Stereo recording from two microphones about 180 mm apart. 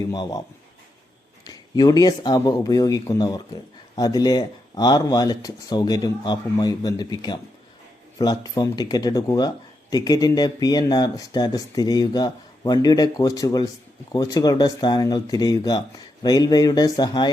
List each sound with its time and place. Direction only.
0.1 s speech: 20° left (ahead or behind)
1.5 s speech: 20° left (ahead or behind)